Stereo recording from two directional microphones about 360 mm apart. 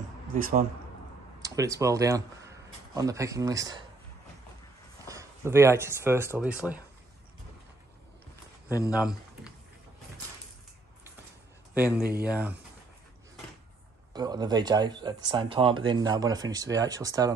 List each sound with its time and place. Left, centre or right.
0.3 s speech: right
1.4 s speech: centre
5.0 s speech: centre
8.9 s a sound: centre
11.7 s speech: centre
14.1 s speech: centre